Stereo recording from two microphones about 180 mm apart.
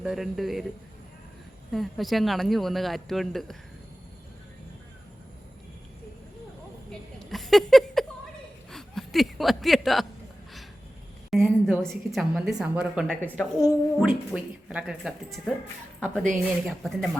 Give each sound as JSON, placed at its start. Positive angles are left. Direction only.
{"t": 0.0, "sound": "a woman's voice", "side_deg": 0}
{"t": 1.7, "sound": "a woman's voice", "side_deg": 0}
{"t": 7.2, "sound": "a sound", "side_deg": 0}
{"t": 8.7, "sound": "chuckle", "side_deg": 0}
{"t": 11.3, "sound": "a sound", "side_deg": 0}
{"t": 11.8, "sound": "a woman's voice", "side_deg": 0}
{"t": 13.2, "sound": "a woman's voice", "side_deg": 5}
{"t": 13.6, "sound": "a woman's voice", "side_deg": -10}